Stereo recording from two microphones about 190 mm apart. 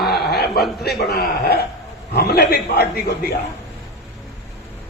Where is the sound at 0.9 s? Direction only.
60° left (ahead or behind).